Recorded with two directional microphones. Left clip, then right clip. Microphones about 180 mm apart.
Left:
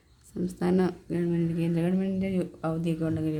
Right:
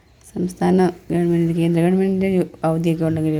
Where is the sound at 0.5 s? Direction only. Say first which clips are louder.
Right 10 dB; 15° right (ahead or behind).